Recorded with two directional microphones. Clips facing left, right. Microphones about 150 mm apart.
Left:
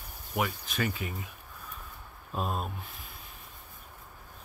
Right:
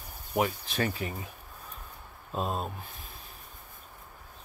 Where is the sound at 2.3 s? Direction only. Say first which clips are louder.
Right 1 dB; 25° right (ahead or behind).